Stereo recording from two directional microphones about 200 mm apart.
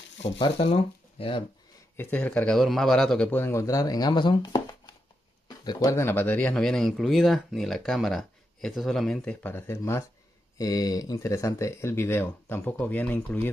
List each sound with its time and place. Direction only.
0.2 s speech: 25° left (ahead or behind)
2.0 s a man's voice: 10° left (ahead or behind)